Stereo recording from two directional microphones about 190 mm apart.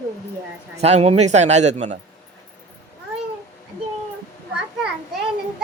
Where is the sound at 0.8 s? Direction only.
35° right (ahead or behind).